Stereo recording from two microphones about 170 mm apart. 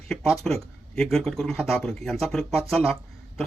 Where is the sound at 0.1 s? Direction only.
Centre (ahead or behind).